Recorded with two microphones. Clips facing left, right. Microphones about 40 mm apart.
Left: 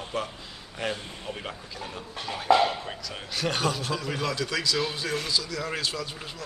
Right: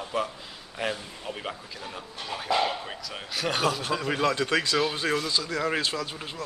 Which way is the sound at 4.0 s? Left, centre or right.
Right.